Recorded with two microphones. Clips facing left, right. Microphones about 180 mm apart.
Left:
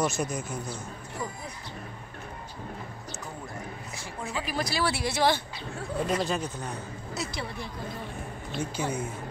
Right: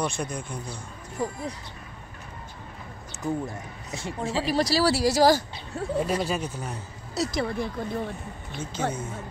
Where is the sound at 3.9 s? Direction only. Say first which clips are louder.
Right 7 dB; 25° right (ahead or behind); by 5.4 s 40° right (ahead or behind).